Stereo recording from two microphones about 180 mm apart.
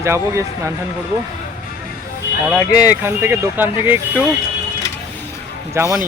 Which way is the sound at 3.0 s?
15° right (ahead or behind).